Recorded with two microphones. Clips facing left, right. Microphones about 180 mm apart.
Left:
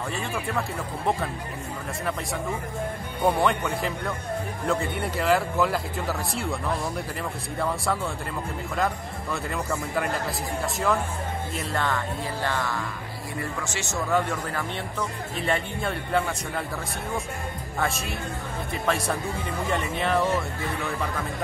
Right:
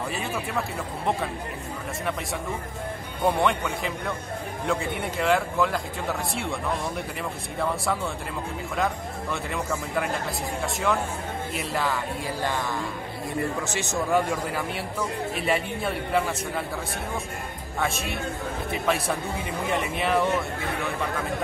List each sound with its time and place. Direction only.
0.6 s speech: centre (ahead or behind)
3.3 s speech: centre (ahead or behind)
7.5 s speech: centre (ahead or behind)
12.4 s speech: 20° right (ahead or behind); by 16.6 s 5° right (ahead or behind)
17.7 s speech: centre (ahead or behind)